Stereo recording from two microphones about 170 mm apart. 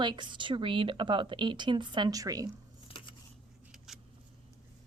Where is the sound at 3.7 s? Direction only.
5° right (ahead or behind).